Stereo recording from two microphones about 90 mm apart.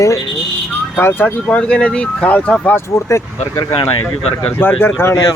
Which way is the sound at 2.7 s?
30° left (ahead or behind).